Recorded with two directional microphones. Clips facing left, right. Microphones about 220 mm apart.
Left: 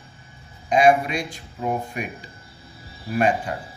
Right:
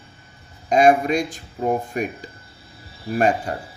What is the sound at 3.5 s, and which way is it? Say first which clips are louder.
Speech: right 2 dB; 45° right (ahead or behind).